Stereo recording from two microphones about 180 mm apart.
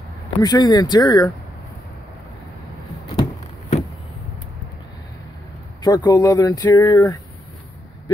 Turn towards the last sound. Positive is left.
turn(degrees=20)  # may be behind; listen again after turning